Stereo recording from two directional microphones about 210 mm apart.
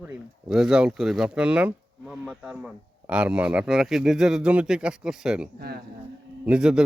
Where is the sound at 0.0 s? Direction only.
5° right (ahead or behind).